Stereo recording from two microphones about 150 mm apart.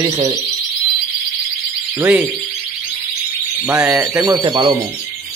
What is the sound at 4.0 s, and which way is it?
Speech, 20° right (ahead or behind).